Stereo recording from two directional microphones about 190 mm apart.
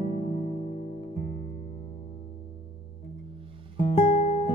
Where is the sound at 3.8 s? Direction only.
35° left (ahead or behind).